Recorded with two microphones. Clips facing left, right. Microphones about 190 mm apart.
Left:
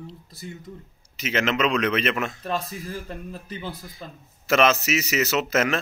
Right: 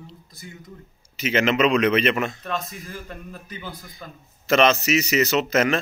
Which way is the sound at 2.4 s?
35° left (ahead or behind).